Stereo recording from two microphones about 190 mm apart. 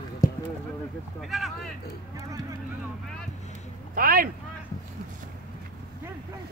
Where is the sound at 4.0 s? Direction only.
50° right (ahead or behind).